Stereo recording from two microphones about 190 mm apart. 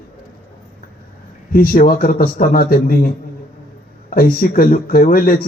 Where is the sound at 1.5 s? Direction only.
50° left (ahead or behind).